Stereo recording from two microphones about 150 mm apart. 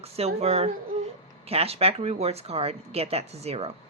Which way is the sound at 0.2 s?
45° right (ahead or behind).